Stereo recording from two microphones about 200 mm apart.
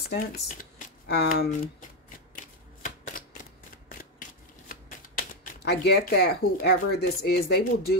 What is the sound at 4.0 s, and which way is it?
Speech, 45° left (ahead or behind).